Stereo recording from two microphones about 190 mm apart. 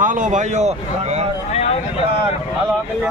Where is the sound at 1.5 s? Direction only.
35° left (ahead or behind).